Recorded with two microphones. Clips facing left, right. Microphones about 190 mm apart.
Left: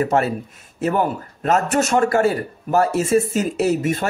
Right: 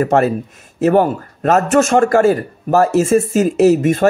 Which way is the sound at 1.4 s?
50° right (ahead or behind).